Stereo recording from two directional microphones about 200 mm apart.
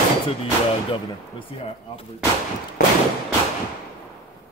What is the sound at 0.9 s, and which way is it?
A man's voice, 25° left (ahead or behind).